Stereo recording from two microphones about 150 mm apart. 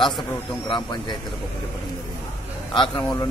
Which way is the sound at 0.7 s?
30° left (ahead or behind).